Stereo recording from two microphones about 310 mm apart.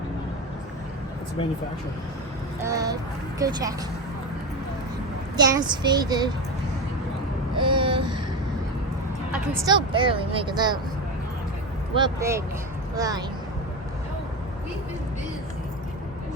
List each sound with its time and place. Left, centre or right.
2.6 s speech: centre
5.4 s speech: centre
7.5 s speech: centre
9.3 s speech: centre
11.9 s speech: centre